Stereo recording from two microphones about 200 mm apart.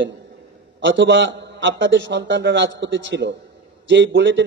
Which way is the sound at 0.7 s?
65° right (ahead or behind).